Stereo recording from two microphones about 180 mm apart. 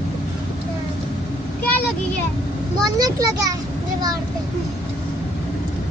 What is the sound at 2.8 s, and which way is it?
Speech, 20° right (ahead or behind).